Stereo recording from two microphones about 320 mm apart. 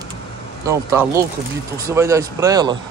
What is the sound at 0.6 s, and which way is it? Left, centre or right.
Speech, centre.